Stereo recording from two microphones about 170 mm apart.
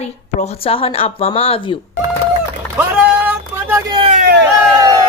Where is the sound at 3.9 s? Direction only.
30° right (ahead or behind).